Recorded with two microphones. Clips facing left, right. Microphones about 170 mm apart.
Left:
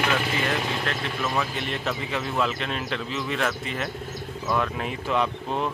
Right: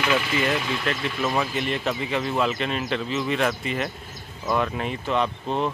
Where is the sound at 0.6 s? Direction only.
45° left (ahead or behind).